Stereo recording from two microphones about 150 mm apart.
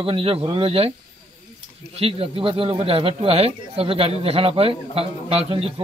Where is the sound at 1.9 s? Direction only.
40° right (ahead or behind).